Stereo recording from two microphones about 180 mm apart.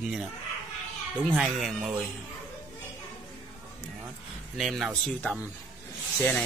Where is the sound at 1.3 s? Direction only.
Centre (ahead or behind).